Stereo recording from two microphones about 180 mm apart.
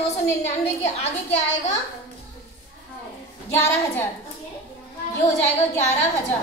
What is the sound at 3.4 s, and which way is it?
Speech, 15° left (ahead or behind).